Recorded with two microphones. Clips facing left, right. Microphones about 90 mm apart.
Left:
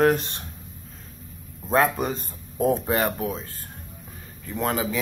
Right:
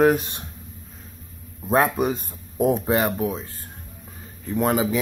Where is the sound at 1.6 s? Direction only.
10° right (ahead or behind).